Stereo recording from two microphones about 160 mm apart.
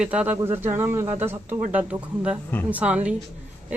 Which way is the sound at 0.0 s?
10° right (ahead or behind).